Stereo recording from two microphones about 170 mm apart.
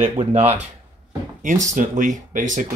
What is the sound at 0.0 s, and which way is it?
Speech, 40° right (ahead or behind).